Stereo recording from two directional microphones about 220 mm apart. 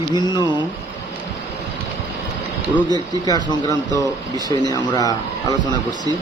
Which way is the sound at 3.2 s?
20° left (ahead or behind).